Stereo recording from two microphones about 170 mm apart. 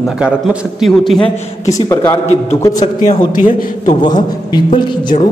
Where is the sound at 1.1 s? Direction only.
35° left (ahead or behind).